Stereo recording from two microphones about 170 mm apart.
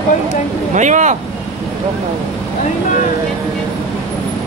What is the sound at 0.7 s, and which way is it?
Speech, 45° right (ahead or behind).